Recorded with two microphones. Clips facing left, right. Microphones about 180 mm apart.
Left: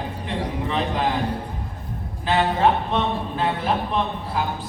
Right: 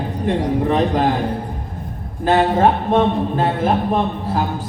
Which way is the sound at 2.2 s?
45° right (ahead or behind).